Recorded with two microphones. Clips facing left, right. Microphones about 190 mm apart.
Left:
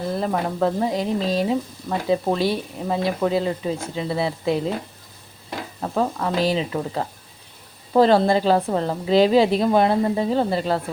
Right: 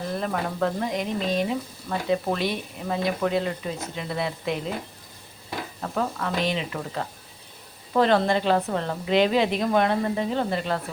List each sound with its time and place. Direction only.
0.2 s a woman's voice: 30° left (ahead or behind)
5.8 s a woman's voice: 25° left (ahead or behind)